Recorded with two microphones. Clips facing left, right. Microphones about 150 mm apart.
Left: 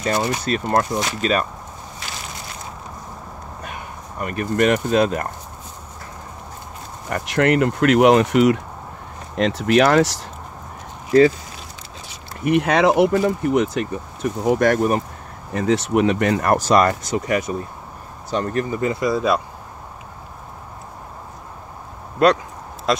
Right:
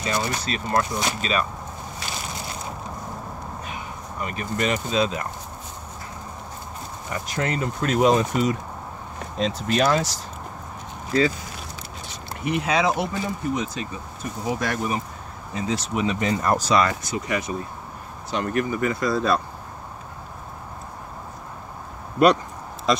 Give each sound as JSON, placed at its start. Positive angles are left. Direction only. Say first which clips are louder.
{"t": 0.0, "sound": "speech", "louder": "left 5 dB", "side_deg": 50}
{"t": 3.6, "sound": "speech", "louder": "left 1 dB", "side_deg": 55}
{"t": 7.1, "sound": "speech", "louder": "left 9 dB", "side_deg": 70}
{"t": 12.4, "sound": "speech", "louder": "left 6 dB", "side_deg": 60}
{"t": 18.3, "sound": "speech", "louder": "left 2 dB", "side_deg": 35}
{"t": 22.9, "sound": "speech", "louder": "left 1 dB", "side_deg": 5}